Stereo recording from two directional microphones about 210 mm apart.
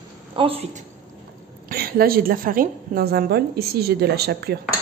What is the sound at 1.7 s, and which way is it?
A woman's voice, 45° right (ahead or behind).